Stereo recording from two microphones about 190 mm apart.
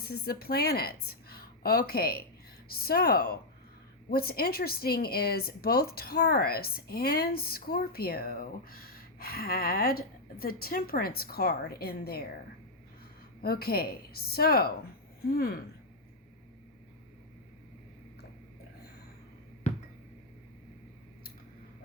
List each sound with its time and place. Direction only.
0.0 s a woman's voice: 55° left (ahead or behind)
13.4 s a woman's voice: 55° left (ahead or behind)